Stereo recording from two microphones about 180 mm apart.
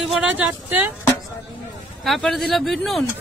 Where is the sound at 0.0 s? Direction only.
5° right (ahead or behind).